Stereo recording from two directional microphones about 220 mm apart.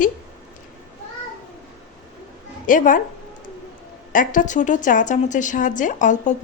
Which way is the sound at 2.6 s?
40° left (ahead or behind).